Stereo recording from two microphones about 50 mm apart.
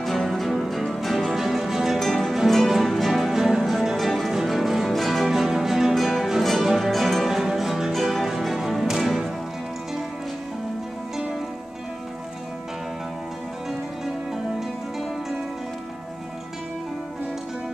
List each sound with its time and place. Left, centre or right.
0.0 s music: centre
2.0 s music: centre
13.7 s music: centre